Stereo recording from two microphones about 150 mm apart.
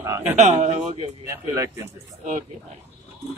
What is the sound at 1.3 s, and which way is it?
Speech, 15° right (ahead or behind).